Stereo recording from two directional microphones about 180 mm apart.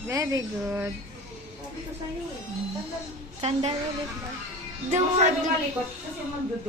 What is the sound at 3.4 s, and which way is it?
Speech, 35° right (ahead or behind).